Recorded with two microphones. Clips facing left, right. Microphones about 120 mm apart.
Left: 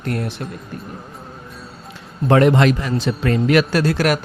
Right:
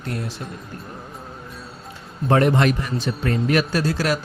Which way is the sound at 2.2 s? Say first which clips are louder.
Left 4 dB; 90° left.